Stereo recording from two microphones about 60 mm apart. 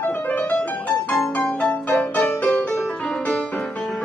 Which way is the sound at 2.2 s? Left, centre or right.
Left.